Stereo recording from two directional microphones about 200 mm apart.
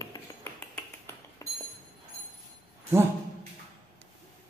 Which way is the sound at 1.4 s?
15° left (ahead or behind).